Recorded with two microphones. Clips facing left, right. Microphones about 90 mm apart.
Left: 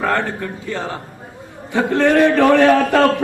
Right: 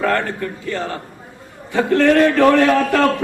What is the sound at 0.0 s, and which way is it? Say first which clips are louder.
Speech: even; 20° left (ahead or behind).